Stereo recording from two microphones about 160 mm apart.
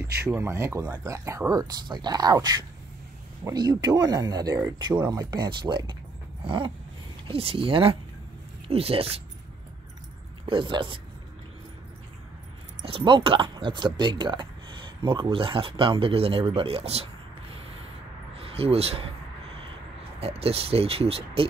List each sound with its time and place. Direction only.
0.0 s speech: 15° right (ahead or behind)
6.4 s a sound: 30° right (ahead or behind)
7.2 s speech: 35° right (ahead or behind)
10.4 s speech: 30° right (ahead or behind)
12.8 s speech: 35° right (ahead or behind)
20.2 s speech: 40° right (ahead or behind)